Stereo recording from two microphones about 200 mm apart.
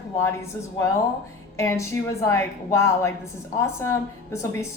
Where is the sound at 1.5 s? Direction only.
15° left (ahead or behind).